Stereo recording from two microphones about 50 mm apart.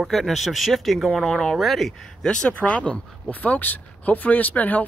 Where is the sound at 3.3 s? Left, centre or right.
Left.